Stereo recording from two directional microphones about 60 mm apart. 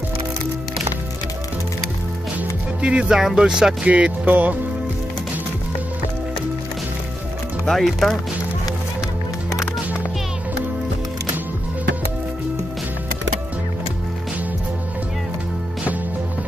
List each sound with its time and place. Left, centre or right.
2.8 s speech: centre
7.6 s speech: centre